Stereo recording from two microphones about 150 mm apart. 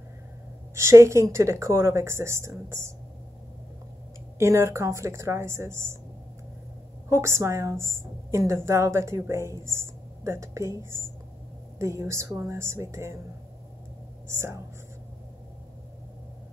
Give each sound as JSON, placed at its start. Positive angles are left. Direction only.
{"t": 0.7, "sound": "a woman's voice", "side_deg": -20}
{"t": 4.4, "sound": "a woman's voice", "side_deg": -20}
{"t": 7.1, "sound": "a woman's voice", "side_deg": -20}
{"t": 14.2, "sound": "speech", "side_deg": -20}